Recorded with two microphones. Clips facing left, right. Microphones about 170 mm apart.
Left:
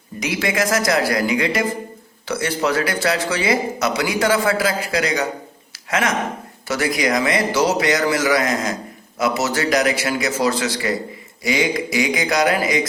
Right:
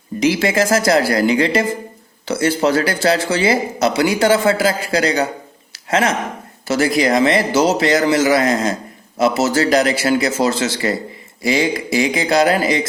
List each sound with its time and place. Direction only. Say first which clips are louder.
0.2 s speech: right 6 dB; 30° right (ahead or behind)